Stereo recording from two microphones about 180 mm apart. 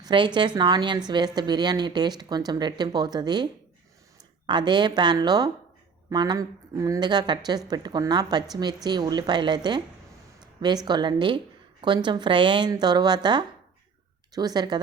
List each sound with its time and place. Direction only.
0.0 s a woman's voice: 25° right (ahead or behind)
10.8 s speech: 25° right (ahead or behind)